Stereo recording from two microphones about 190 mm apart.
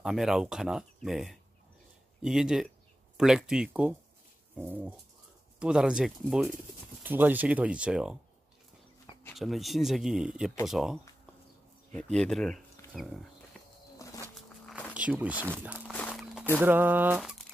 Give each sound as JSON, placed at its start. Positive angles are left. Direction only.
{"t": 0.0, "sound": "speech", "side_deg": 0}
{"t": 9.3, "sound": "speech", "side_deg": 0}
{"t": 12.9, "sound": "a sound", "side_deg": 0}
{"t": 14.0, "sound": "a sound", "side_deg": 15}
{"t": 15.0, "sound": "speech", "side_deg": -5}
{"t": 15.9, "sound": "walk", "side_deg": 5}
{"t": 16.5, "sound": "speech", "side_deg": -10}